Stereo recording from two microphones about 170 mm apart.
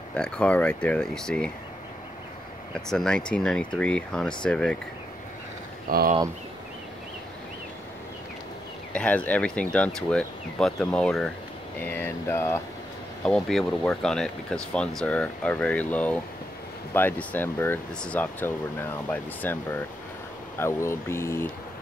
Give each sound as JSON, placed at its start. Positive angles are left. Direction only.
{"t": 0.1, "sound": "speech", "side_deg": 5}
{"t": 2.7, "sound": "speech", "side_deg": 5}
{"t": 5.9, "sound": "speech", "side_deg": -55}
{"t": 8.9, "sound": "speech", "side_deg": 5}
{"t": 13.2, "sound": "speech", "side_deg": 0}